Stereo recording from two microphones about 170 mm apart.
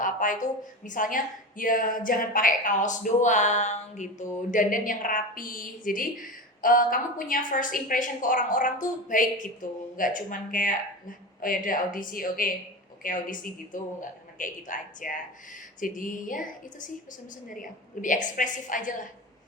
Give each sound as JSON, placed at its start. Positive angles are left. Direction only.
{"t": 0.0, "sound": "a woman's voice", "side_deg": 50}